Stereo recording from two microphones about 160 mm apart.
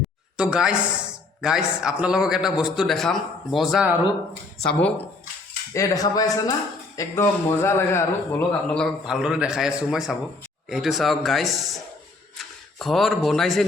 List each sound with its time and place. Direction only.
0.3 s speech: 5° right (ahead or behind)
4.6 s speech: 5° left (ahead or behind)
5.7 s speech: 20° left (ahead or behind); by 11.8 s centre (ahead or behind)
12.8 s speech: centre (ahead or behind)